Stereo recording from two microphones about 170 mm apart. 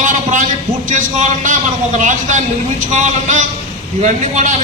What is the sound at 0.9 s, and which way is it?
Speech, 50° right (ahead or behind).